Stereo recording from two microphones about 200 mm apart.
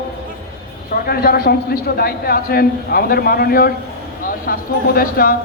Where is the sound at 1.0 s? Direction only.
50° left (ahead or behind).